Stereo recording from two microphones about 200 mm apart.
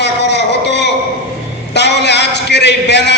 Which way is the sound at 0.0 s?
60° left (ahead or behind).